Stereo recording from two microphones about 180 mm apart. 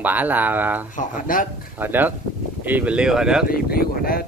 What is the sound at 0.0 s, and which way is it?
Speech, 10° right (ahead or behind).